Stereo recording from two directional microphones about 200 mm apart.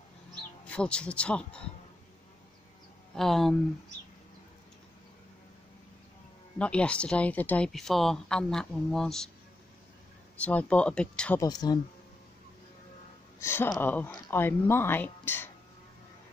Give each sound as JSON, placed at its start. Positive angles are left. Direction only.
{"t": 0.7, "sound": "speech", "side_deg": 5}
{"t": 3.2, "sound": "speech", "side_deg": 0}
{"t": 6.6, "sound": "speech", "side_deg": 5}
{"t": 10.3, "sound": "speech", "side_deg": 5}
{"t": 11.4, "sound": "speech", "side_deg": 20}
{"t": 13.4, "sound": "speech", "side_deg": 15}